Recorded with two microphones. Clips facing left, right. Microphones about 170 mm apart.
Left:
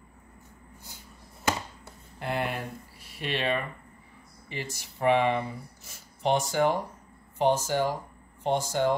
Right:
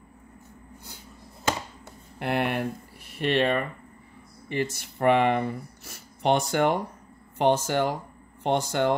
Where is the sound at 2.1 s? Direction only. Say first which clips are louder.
Right 5 dB; 65° right (ahead or behind).